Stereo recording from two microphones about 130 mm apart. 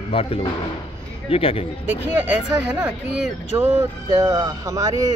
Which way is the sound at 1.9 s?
15° right (ahead or behind).